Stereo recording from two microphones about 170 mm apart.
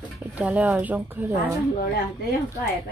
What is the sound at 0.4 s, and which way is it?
Speech, 10° right (ahead or behind).